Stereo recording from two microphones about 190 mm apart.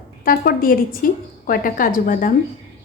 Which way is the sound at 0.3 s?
50° left (ahead or behind).